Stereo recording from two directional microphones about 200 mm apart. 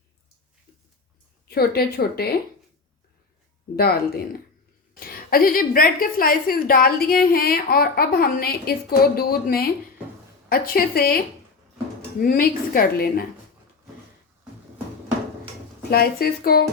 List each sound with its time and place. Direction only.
1.5 s a woman's voice: 50° left (ahead or behind)
3.8 s a woman's voice: 50° left (ahead or behind)
12.2 s a woman's voice: 45° left (ahead or behind)
15.9 s a woman's voice: 50° left (ahead or behind)